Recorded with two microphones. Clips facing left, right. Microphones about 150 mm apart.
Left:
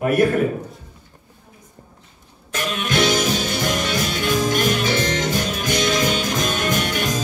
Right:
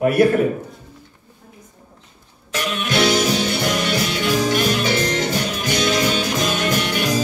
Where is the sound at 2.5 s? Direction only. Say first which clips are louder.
Right 1 dB; 45° left (ahead or behind).